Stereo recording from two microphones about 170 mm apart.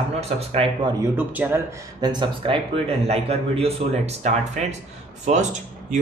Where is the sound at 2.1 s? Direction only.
30° right (ahead or behind).